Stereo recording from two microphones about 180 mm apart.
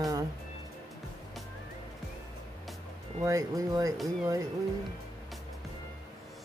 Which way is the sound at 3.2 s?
20° right (ahead or behind).